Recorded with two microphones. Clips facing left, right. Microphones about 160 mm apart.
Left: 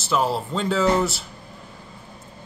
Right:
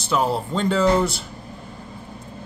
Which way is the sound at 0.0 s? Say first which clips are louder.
Right 1 dB; centre (ahead or behind).